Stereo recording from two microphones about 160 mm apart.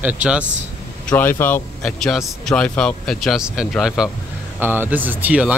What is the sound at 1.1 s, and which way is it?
Speech, 15° left (ahead or behind).